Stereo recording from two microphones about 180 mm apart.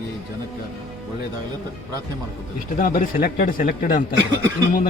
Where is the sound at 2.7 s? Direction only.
50° left (ahead or behind).